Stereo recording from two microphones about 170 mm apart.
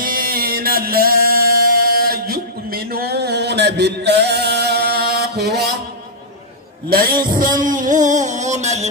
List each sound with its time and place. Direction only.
0.0 s music: 55° right (ahead or behind)
6.9 s music: 60° right (ahead or behind); by 8.8 s 45° right (ahead or behind)